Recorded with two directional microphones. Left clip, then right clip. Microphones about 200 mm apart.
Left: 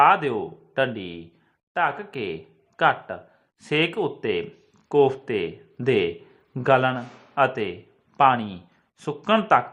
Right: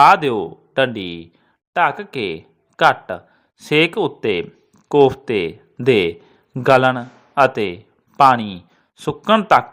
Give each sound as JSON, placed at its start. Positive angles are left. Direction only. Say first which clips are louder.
{"t": 0.0, "sound": "a man's voice", "louder": "right 6 dB", "side_deg": -30}